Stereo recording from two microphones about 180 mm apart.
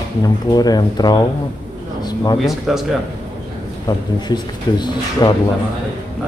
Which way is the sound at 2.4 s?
Centre (ahead or behind).